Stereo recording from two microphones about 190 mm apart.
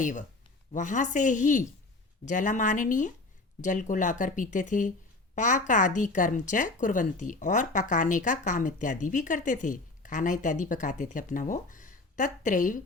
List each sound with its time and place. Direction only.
0.0 s a woman's voice: 40° left (ahead or behind)